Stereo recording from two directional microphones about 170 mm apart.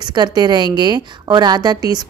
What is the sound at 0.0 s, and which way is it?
A woman's voice, 25° right (ahead or behind).